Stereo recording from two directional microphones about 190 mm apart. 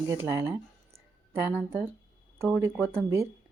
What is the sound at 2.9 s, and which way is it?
Speech, 15° right (ahead or behind).